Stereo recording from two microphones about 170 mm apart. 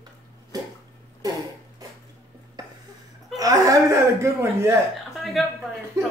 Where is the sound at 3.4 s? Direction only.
20° right (ahead or behind).